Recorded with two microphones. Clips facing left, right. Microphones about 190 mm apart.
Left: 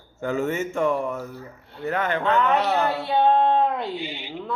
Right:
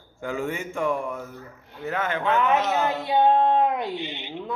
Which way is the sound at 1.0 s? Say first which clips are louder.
Left 3 dB; centre (ahead or behind).